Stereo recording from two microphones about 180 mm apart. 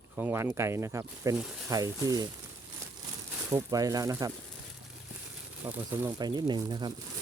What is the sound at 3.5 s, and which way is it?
Speech, 20° right (ahead or behind).